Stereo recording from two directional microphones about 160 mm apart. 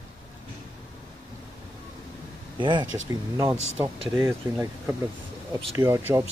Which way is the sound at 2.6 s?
30° right (ahead or behind).